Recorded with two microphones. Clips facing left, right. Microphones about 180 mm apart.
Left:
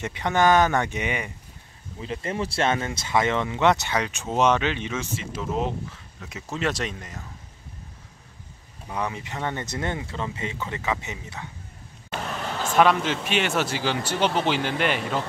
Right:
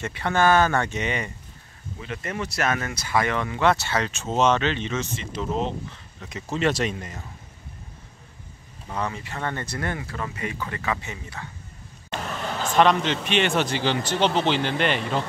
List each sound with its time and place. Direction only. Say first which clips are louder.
0.0 s speech: even; 15° left (ahead or behind)
2.0 s speech: left 2 dB; 30° left (ahead or behind); by 7.2 s centre (ahead or behind)
8.8 s speech: even; 10° left (ahead or behind)
12.7 s speech: even; 5° left (ahead or behind)